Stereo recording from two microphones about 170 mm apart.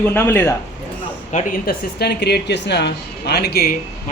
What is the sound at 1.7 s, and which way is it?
A woman's voice, 75° left (ahead or behind).